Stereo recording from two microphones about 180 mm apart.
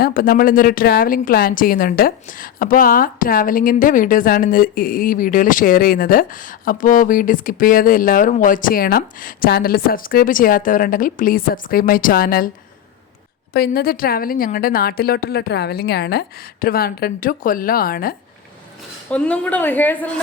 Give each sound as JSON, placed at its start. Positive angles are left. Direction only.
{"t": 0.0, "sound": "a woman's voice", "side_deg": 55}
{"t": 13.5, "sound": "a woman's voice", "side_deg": 55}
{"t": 19.1, "sound": "speech", "side_deg": 5}